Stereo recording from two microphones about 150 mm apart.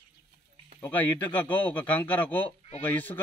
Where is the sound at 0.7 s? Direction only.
10° left (ahead or behind).